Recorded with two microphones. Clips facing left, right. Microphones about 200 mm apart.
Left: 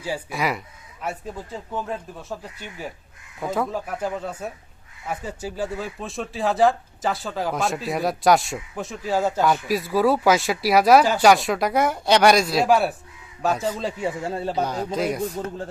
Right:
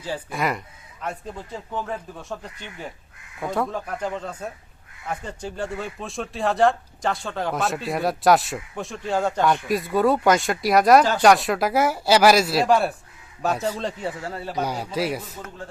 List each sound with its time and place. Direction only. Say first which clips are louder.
0.0 s speech: even; 5° left (ahead or behind)
14.3 s speech: left 4 dB; 25° left (ahead or behind)
14.6 s speech: right 1 dB; 10° right (ahead or behind)